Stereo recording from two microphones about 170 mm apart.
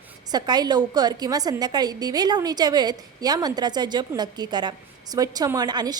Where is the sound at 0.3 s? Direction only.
25° right (ahead or behind).